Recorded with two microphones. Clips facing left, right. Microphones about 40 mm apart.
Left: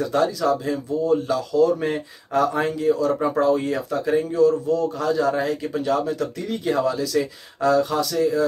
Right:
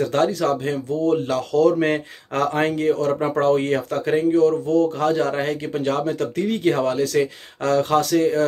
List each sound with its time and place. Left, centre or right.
0.0 s a man's voice: right